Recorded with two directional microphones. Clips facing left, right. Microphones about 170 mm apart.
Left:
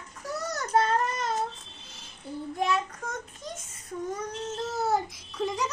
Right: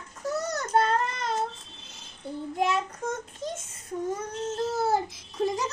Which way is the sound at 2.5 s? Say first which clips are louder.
Right 1 dB; 25° right (ahead or behind).